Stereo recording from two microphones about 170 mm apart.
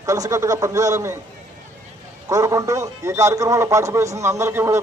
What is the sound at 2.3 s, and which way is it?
A man's voice, 20° right (ahead or behind).